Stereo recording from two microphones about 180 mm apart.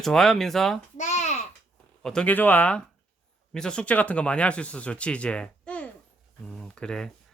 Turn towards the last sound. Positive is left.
turn(degrees=5)  # may be behind; listen again after turning